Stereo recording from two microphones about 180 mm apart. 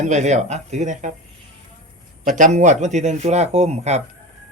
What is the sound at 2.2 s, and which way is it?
Speech, 45° right (ahead or behind).